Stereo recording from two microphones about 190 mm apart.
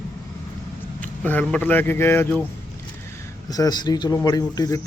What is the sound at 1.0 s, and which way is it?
A man's voice, 10° left (ahead or behind).